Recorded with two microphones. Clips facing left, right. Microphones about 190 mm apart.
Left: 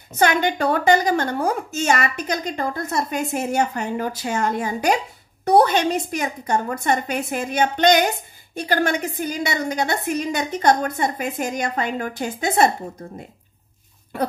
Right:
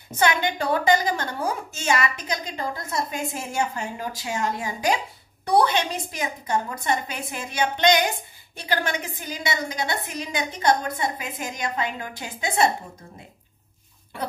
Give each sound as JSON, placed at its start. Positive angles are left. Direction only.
{"t": 0.2, "sound": "a woman's voice", "side_deg": 55}
{"t": 3.8, "sound": "a woman's voice", "side_deg": 50}